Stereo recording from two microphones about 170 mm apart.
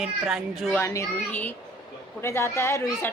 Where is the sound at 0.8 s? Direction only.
15° left (ahead or behind).